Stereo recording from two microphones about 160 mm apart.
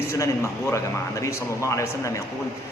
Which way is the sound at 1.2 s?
20° left (ahead or behind).